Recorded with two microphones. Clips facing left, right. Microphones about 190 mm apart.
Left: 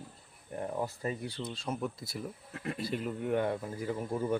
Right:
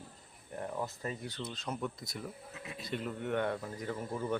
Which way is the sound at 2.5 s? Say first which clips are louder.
Left 8 dB; 55° left (ahead or behind).